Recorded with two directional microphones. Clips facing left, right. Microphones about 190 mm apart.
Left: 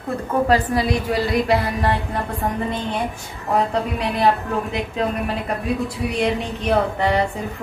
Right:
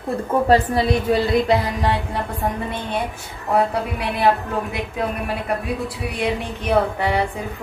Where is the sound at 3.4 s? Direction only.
5° right (ahead or behind).